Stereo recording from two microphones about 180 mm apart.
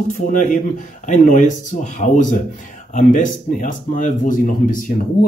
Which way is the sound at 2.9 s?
45° left (ahead or behind).